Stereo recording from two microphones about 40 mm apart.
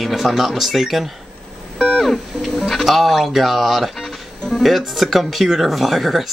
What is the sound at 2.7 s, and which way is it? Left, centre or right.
Speech, centre.